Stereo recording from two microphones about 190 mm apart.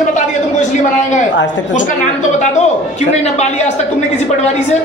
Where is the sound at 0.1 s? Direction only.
40° left (ahead or behind).